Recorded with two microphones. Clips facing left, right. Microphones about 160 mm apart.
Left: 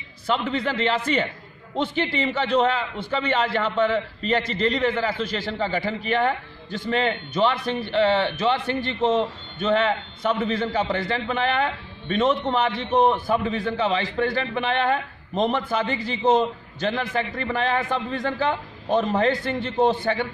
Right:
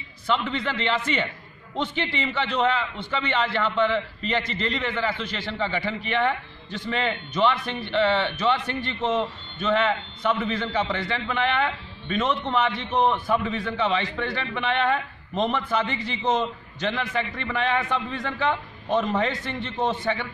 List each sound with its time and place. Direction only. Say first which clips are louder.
0.3 s a man's voice: left 2 dB; 40° left (ahead or behind)